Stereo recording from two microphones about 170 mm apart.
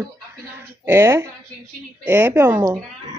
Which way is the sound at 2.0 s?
15° right (ahead or behind).